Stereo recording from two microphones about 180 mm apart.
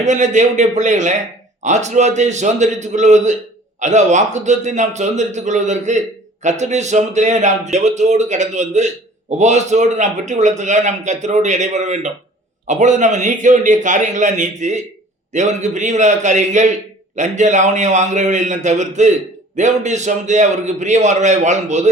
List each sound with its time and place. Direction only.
0.0 s a man's voice: 40° right (ahead or behind)